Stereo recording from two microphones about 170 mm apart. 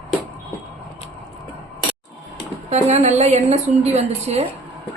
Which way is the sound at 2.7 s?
40° right (ahead or behind).